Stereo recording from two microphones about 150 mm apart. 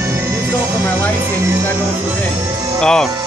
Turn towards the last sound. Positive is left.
turn(degrees=5)  # may be behind; listen again after turning